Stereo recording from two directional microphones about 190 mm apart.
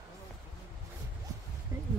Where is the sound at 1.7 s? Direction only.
15° right (ahead or behind).